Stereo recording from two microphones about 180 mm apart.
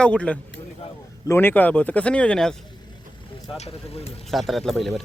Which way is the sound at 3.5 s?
35° left (ahead or behind).